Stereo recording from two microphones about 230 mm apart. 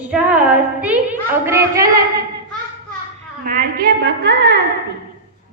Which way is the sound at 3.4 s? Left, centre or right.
Right.